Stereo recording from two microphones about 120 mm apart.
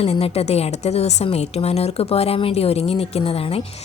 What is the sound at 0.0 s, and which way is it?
A woman's voice, 55° left (ahead or behind).